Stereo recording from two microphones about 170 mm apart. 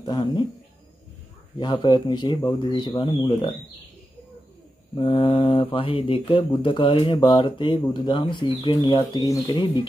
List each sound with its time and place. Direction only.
0.0 s speech: 25° left (ahead or behind)
1.6 s speech: 25° left (ahead or behind)
4.9 s speech: 30° left (ahead or behind)